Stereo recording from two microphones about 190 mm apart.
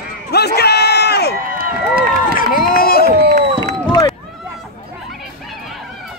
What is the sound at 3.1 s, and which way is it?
Speech, 45° right (ahead or behind).